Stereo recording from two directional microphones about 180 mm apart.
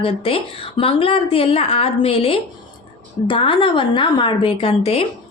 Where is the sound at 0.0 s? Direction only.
30° left (ahead or behind).